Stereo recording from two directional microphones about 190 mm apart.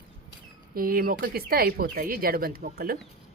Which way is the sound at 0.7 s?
50° right (ahead or behind).